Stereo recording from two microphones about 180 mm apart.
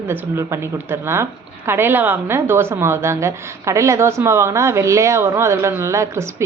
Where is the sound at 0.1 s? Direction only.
15° right (ahead or behind).